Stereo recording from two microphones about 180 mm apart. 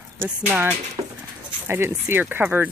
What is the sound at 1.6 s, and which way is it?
Speech, 10° right (ahead or behind).